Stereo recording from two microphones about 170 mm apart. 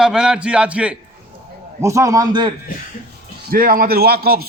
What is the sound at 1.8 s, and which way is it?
Speech, 20° right (ahead or behind).